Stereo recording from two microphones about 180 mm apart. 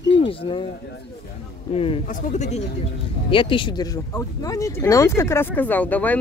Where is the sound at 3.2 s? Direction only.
30° left (ahead or behind).